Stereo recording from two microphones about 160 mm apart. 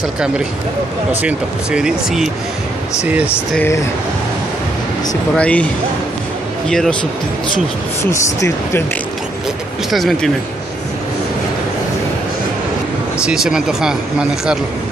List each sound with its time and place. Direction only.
1.2 s speech: 5° right (ahead or behind)
5.3 s speech: 10° left (ahead or behind)
6.7 s speech: 5° left (ahead or behind)
8.0 s speech: 20° left (ahead or behind)
9.8 s speech: centre (ahead or behind)
13.2 s speech: 5° right (ahead or behind)